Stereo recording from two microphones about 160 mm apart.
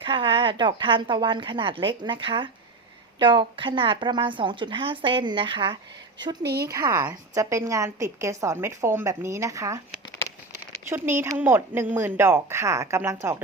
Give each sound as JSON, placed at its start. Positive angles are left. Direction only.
{"t": 0.0, "sound": "a woman's voice", "side_deg": -30}
{"t": 6.4, "sound": "a woman's voice", "side_deg": -90}
{"t": 6.7, "sound": "a woman's voice", "side_deg": -20}
{"t": 10.8, "sound": "a woman's voice", "side_deg": -15}